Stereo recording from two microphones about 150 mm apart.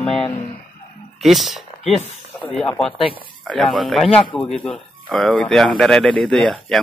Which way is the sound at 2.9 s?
35° left (ahead or behind).